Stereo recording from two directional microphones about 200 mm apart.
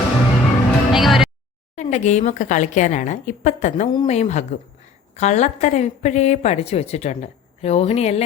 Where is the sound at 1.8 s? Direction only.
35° left (ahead or behind).